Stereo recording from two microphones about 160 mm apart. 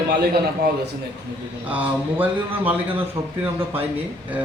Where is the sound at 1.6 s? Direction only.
10° right (ahead or behind).